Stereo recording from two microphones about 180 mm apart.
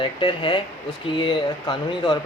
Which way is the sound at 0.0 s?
25° left (ahead or behind).